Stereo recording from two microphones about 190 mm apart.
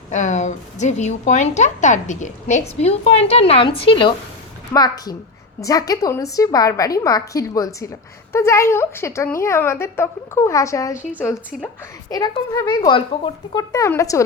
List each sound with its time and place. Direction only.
0.1 s a woman's voice: 40° left (ahead or behind); by 11.7 s 10° left (ahead or behind)
12.1 s a woman's voice: 20° left (ahead or behind)